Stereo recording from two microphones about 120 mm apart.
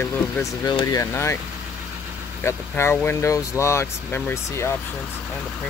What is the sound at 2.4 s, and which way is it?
Speech, 20° left (ahead or behind).